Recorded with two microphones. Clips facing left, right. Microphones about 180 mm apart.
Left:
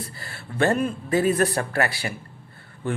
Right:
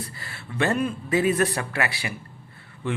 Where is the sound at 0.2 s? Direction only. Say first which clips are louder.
Left 3 dB; 45° left (ahead or behind).